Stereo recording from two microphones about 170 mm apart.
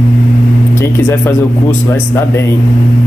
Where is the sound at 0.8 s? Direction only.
15° left (ahead or behind).